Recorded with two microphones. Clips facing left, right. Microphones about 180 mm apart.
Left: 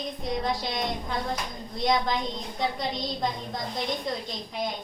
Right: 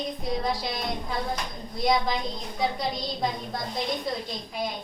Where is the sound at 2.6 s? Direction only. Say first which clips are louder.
Right 2 dB; 5° right (ahead or behind).